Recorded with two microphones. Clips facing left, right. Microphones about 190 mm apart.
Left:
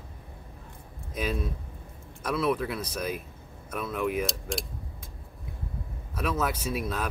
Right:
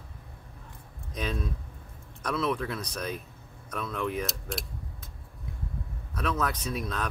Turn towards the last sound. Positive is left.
turn(degrees=5)  # may be behind; listen again after turning